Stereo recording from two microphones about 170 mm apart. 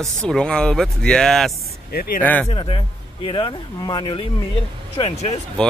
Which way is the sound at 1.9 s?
60° left (ahead or behind).